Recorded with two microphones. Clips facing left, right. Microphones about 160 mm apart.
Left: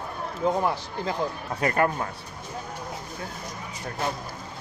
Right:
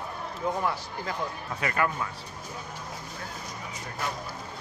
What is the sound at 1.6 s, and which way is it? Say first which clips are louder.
Speech: left 5 dB; 45° left (ahead or behind).